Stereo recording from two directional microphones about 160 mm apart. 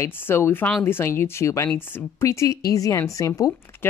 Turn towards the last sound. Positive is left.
turn(degrees=20)  # may be behind; listen again after turning